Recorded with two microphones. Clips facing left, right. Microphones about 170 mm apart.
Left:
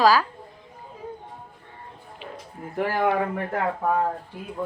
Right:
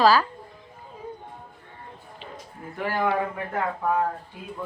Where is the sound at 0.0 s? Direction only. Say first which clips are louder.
Even; 10° left (ahead or behind).